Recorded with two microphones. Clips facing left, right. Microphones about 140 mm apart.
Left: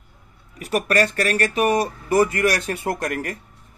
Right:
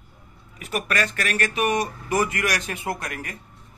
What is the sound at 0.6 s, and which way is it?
Speech, 40° left (ahead or behind).